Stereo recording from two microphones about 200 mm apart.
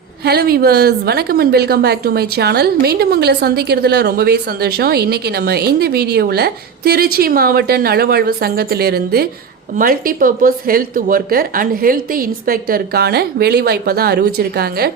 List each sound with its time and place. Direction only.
0.3 s a woman's voice: 50° right (ahead or behind)